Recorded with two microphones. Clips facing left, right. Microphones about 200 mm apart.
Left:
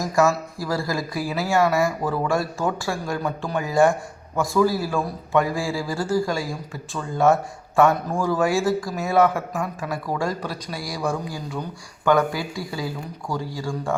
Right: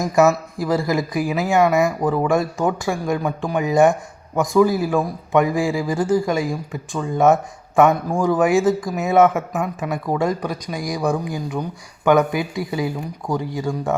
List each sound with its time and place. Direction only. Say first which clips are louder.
0.0 s speech: right 4 dB; 20° right (ahead or behind)